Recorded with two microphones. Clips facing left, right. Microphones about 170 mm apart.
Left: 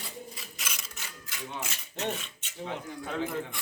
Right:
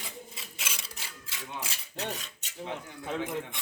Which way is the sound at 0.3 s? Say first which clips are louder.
Even; 30° right (ahead or behind).